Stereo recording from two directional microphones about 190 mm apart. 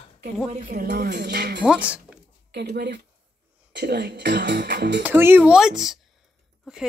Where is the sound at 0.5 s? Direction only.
50° right (ahead or behind).